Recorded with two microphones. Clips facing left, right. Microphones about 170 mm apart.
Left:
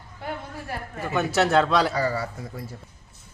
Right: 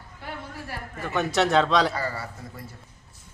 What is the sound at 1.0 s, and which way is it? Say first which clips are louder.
Speech: left 1 dB; 5° left (ahead or behind).